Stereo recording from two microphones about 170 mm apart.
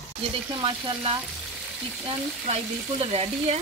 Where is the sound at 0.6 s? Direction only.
35° right (ahead or behind).